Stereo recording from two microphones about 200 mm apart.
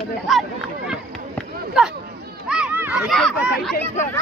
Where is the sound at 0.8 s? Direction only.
5° right (ahead or behind).